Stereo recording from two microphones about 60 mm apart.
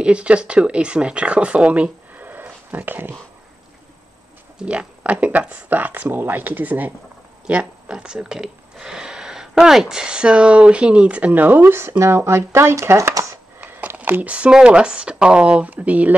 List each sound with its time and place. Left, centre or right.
0.0 s speech: centre
4.6 s speech: centre
7.4 s speech: centre
12.0 s speech: right
13.1 s speech: right
13.6 s speech: right